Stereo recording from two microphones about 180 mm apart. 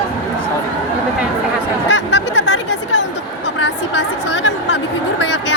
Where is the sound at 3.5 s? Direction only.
80° left.